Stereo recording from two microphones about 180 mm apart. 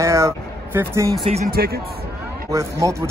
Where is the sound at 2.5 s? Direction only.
15° right (ahead or behind).